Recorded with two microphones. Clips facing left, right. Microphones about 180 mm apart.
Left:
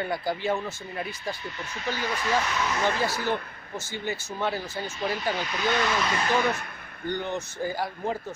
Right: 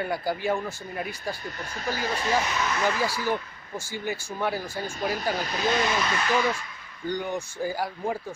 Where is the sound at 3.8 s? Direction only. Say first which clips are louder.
Right 1 dB; 10° right (ahead or behind).